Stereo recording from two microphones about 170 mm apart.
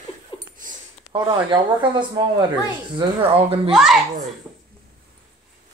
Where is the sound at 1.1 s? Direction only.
30° right (ahead or behind).